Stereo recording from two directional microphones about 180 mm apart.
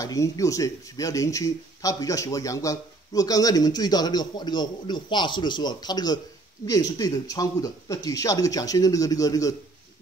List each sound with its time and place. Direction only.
0.0 s speech: 20° left (ahead or behind)